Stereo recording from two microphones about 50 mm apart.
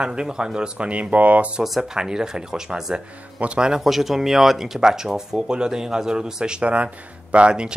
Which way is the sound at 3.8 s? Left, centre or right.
Centre.